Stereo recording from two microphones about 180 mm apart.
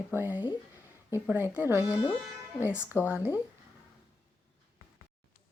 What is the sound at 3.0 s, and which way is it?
Speech, 15° left (ahead or behind).